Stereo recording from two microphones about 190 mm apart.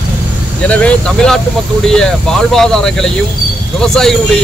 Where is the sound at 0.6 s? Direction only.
5° left (ahead or behind).